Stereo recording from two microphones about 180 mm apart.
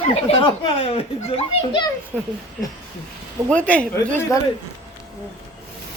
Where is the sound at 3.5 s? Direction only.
5° left (ahead or behind).